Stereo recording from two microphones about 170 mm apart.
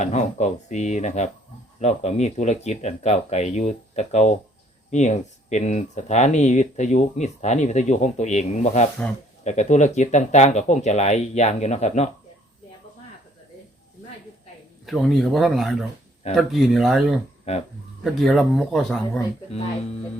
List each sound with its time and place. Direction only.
0.0 s speech: 45° left (ahead or behind)
14.8 s speech: centre (ahead or behind)